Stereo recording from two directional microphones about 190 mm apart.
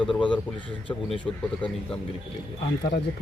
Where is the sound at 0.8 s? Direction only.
25° left (ahead or behind).